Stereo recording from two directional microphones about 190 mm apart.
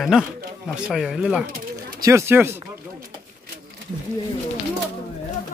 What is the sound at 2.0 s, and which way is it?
Speech, 15° right (ahead or behind).